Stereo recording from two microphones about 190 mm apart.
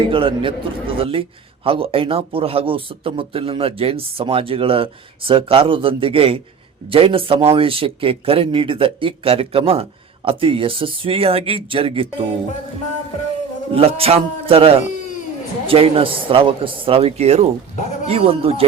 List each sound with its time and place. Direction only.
0.1 s speech: 25° right (ahead or behind)
13.7 s speech: 30° right (ahead or behind)